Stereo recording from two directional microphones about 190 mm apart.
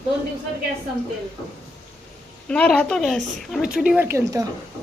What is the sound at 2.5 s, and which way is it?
A woman's voice, 5° left (ahead or behind).